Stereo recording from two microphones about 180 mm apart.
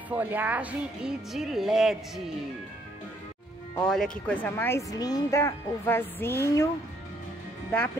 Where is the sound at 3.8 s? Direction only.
5° left (ahead or behind).